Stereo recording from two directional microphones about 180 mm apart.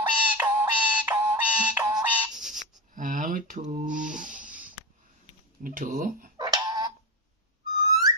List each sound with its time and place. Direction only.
0.3 s music: 10° right (ahead or behind)
2.0 s a sound: 10° right (ahead or behind)
2.9 s a sound: 45° right (ahead or behind)
4.0 s rub: 5° right (ahead or behind)
5.6 s speech: 50° right (ahead or behind)
6.3 s tick-tock: 20° right (ahead or behind)
7.7 s owl: 20° right (ahead or behind)